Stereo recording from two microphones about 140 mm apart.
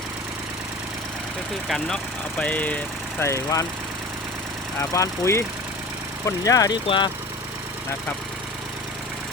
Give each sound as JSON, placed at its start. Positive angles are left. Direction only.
{"t": 1.6, "sound": "speech", "side_deg": 0}
{"t": 2.4, "sound": "speech", "side_deg": 10}
{"t": 4.8, "sound": "speech", "side_deg": 20}
{"t": 6.8, "sound": "speech", "side_deg": 35}